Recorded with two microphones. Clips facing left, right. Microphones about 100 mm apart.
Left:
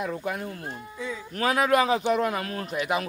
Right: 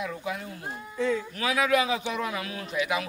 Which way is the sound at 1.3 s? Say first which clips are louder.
Left 7 dB; 45° left (ahead or behind).